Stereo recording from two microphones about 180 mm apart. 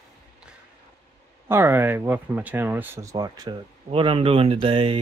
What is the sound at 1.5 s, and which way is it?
Speech, 15° right (ahead or behind).